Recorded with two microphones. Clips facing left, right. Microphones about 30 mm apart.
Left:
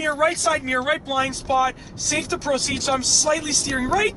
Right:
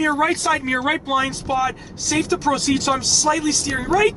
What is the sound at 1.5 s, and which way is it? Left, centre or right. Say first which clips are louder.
Speech: left 1 dB; centre.